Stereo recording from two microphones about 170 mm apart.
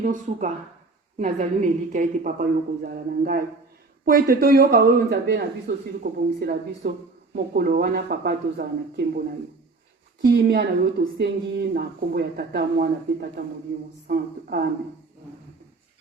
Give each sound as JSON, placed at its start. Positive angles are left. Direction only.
{"t": 0.0, "sound": "a woman's voice", "side_deg": -50}